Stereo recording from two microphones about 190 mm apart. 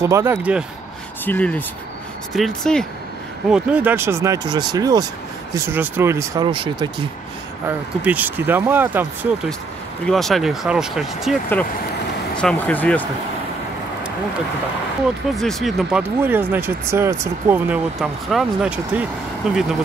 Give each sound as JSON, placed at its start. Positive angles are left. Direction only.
{"t": 0.0, "sound": "speech", "side_deg": -15}
{"t": 1.2, "sound": "speech", "side_deg": 10}
{"t": 3.5, "sound": "speech", "side_deg": -10}
{"t": 7.6, "sound": "speech", "side_deg": -10}
{"t": 10.0, "sound": "speech", "side_deg": 0}
{"t": 12.4, "sound": "speech", "side_deg": 5}
{"t": 15.3, "sound": "speech", "side_deg": 0}